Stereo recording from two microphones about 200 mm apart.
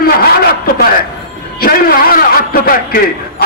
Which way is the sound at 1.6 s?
45° left (ahead or behind).